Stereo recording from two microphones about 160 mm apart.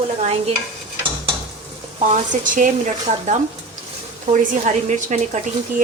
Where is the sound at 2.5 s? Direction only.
50° right (ahead or behind).